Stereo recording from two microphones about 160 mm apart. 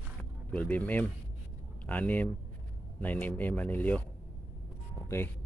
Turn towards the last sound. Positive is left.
turn(degrees=15)  # may be behind; listen again after turning